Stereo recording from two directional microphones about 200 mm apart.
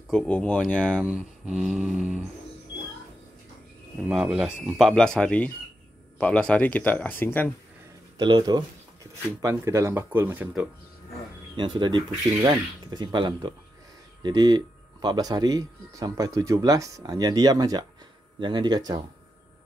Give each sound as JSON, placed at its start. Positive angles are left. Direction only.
{"t": 0.1, "sound": "speech", "side_deg": 5}
{"t": 1.0, "sound": "speech", "side_deg": -5}
{"t": 4.1, "sound": "speech", "side_deg": 0}
{"t": 8.2, "sound": "speech", "side_deg": -20}
{"t": 11.5, "sound": "speech", "side_deg": -25}